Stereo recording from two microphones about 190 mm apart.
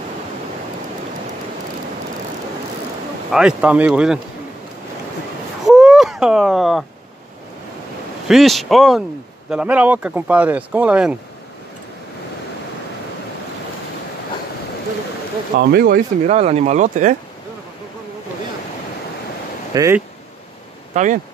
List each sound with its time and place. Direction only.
3.3 s speech: 5° right (ahead or behind)
5.7 s a sound: 5° right (ahead or behind)
8.3 s speech: centre (ahead or behind)
15.5 s speech: 55° right (ahead or behind)
16.3 s speech: 35° right (ahead or behind)
19.7 s speech: 15° right (ahead or behind)
20.9 s speech: 40° right (ahead or behind)